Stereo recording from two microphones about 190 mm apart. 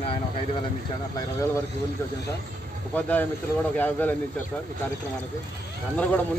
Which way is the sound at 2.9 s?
10° left (ahead or behind).